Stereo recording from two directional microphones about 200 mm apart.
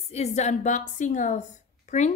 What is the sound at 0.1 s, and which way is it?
Speech, 35° left (ahead or behind).